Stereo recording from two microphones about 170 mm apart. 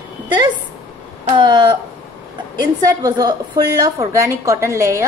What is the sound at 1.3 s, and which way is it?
Speech, 25° right (ahead or behind).